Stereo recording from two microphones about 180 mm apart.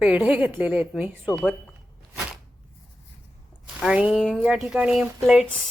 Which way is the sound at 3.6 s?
5° right (ahead or behind).